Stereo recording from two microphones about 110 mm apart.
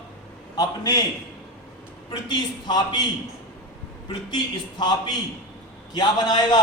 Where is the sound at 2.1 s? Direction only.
45° left (ahead or behind).